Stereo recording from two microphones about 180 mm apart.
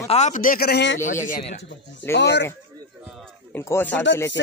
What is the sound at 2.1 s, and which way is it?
Speech, 75° left (ahead or behind).